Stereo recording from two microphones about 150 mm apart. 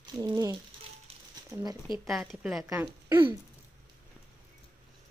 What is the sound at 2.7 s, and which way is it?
Speech, 15° right (ahead or behind).